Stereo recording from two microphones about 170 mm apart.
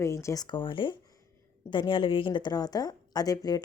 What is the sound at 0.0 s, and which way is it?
Speech, 15° left (ahead or behind).